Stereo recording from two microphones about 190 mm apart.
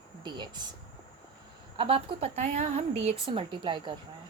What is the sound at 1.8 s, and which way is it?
A woman's voice, 30° right (ahead or behind).